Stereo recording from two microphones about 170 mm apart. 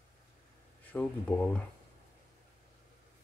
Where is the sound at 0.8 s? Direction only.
10° left (ahead or behind).